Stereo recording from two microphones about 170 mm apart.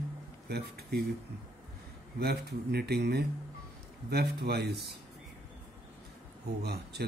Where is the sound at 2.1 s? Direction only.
70° right (ahead or behind).